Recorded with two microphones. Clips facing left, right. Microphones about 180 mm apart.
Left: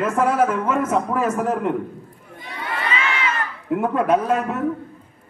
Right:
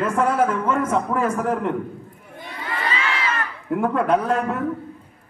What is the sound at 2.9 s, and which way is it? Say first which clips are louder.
Crowd: left 3 dB; 35° right (ahead or behind).